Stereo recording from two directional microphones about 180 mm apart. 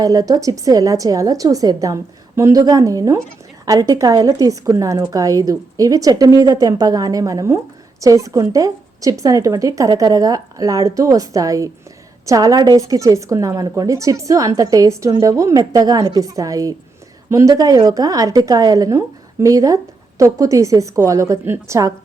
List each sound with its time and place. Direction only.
0.0 s a woman's voice: 20° right (ahead or behind)